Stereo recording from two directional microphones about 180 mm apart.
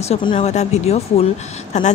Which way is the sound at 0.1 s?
30° left (ahead or behind).